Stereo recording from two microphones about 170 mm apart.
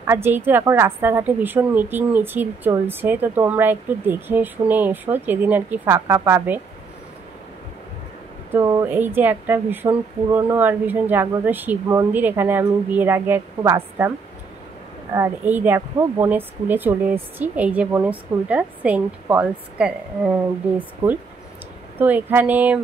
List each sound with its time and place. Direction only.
0.0 s a woman's voice: 15° right (ahead or behind)
8.5 s a woman's voice: 20° right (ahead or behind)
15.1 s a woman's voice: 15° right (ahead or behind)